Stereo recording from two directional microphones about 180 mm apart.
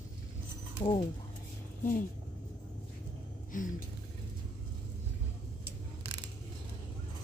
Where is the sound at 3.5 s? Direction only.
45° left (ahead or behind).